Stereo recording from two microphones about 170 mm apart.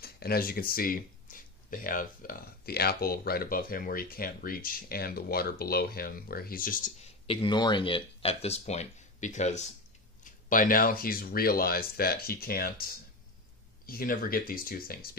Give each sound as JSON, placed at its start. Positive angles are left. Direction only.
{"t": 0.0, "sound": "speech", "side_deg": 60}
{"t": 7.2, "sound": "speech", "side_deg": 25}
{"t": 10.2, "sound": "speech", "side_deg": 55}